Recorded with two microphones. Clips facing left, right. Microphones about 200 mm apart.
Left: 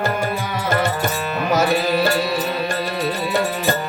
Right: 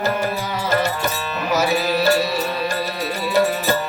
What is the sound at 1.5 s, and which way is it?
Music, 55° left (ahead or behind).